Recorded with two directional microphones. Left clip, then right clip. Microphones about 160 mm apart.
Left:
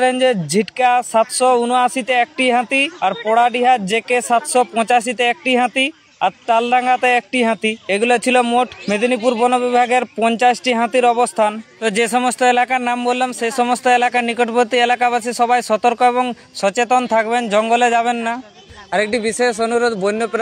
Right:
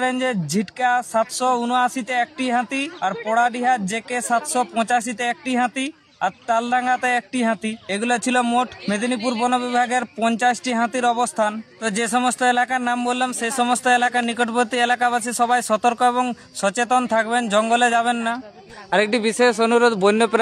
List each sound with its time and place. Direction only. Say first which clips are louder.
0.0 s a man's voice: left 7 dB; 15° left (ahead or behind); by 20.3 s 10° right (ahead or behind)